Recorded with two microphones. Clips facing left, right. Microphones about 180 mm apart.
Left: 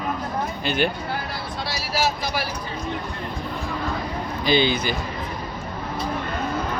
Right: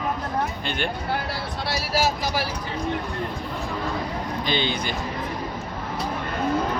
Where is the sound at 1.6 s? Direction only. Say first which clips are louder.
Right 1 dB; 50° right (ahead or behind).